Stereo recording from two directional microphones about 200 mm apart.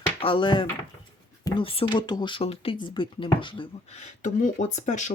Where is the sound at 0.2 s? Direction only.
25° left (ahead or behind).